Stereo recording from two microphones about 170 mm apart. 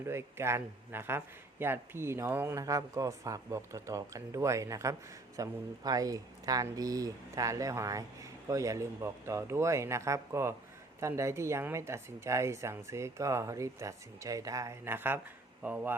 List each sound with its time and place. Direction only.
0.0 s a man's voice: 15° right (ahead or behind)